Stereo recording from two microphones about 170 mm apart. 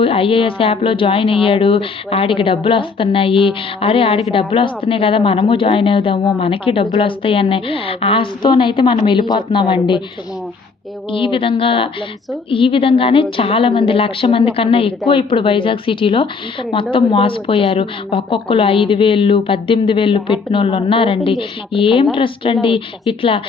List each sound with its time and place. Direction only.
0.0 s a woman's voice: 30° left (ahead or behind)
11.1 s speech: 30° left (ahead or behind)